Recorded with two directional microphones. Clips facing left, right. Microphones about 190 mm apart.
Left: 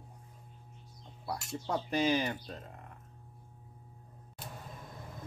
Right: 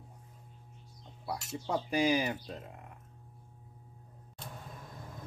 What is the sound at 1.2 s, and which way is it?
Speech, 5° right (ahead or behind).